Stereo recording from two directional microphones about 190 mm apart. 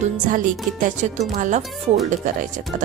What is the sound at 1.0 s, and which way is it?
Speech, 40° right (ahead or behind).